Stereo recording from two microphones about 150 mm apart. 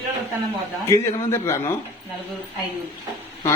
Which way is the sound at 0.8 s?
20° left (ahead or behind).